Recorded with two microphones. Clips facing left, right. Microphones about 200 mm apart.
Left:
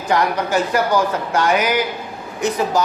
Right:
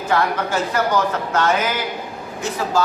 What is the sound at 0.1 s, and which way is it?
Speech, 15° left (ahead or behind).